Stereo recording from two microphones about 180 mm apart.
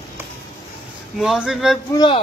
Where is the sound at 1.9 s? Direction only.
25° left (ahead or behind).